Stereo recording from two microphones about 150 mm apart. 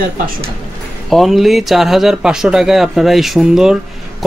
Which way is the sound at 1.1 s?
Centre (ahead or behind).